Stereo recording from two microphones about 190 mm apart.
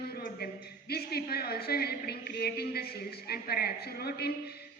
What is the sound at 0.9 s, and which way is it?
A woman's voice, 55° left (ahead or behind).